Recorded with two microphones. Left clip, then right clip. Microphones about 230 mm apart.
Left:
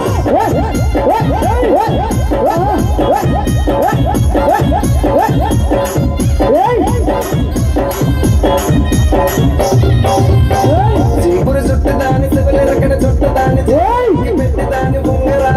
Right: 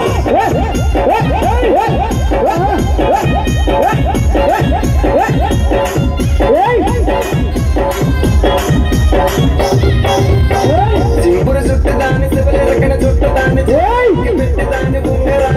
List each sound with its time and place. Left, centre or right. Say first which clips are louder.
0.9 s music: even; left
6.4 s music: even; left
9.1 s music: even; left